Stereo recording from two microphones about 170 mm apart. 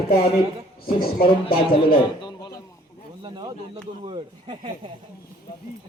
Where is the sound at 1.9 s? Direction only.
25° left (ahead or behind).